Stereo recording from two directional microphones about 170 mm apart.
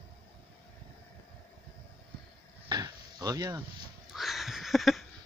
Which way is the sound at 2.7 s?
25° right (ahead or behind).